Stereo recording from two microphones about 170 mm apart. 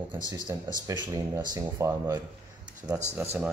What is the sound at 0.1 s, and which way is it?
Speech, 25° right (ahead or behind).